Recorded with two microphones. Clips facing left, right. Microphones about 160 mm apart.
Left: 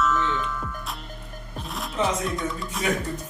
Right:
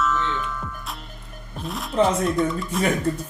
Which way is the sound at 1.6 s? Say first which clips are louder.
Right 6 dB; centre (ahead or behind).